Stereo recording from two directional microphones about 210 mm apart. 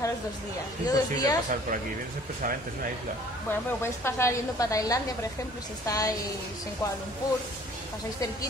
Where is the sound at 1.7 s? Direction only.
40° right (ahead or behind).